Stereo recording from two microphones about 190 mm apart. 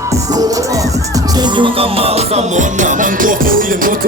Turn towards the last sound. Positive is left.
turn(degrees=-45)  # may be behind; listen again after turning